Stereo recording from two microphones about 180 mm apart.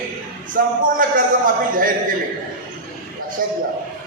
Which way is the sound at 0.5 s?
50° right (ahead or behind).